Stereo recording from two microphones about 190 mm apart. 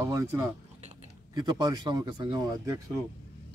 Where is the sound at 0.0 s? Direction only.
15° right (ahead or behind).